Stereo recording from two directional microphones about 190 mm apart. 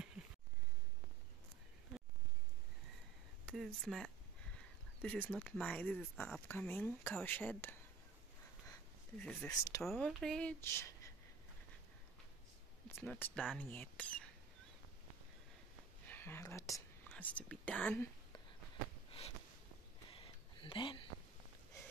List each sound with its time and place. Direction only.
3.4 s speech: 5° left (ahead or behind)
9.2 s speech: 5° left (ahead or behind)
9.5 s speech: 20° left (ahead or behind)
9.8 s speech: 5° left (ahead or behind)
12.8 s speech: 10° left (ahead or behind)
16.1 s speech: 10° left (ahead or behind)
20.2 s a sound: 25° left (ahead or behind)